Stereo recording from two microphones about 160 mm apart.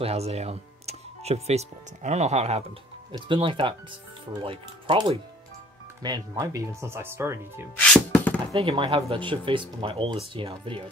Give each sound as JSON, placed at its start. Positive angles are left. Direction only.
{"t": 0.0, "sound": "speech", "side_deg": -40}
{"t": 3.1, "sound": "speech", "side_deg": -35}
{"t": 7.7, "sound": "music", "side_deg": 10}
{"t": 8.5, "sound": "speech", "side_deg": -35}